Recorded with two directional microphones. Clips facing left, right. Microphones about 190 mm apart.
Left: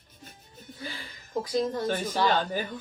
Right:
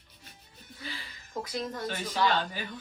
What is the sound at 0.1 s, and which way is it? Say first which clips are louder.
Music: left 6 dB; 45° left (ahead or behind).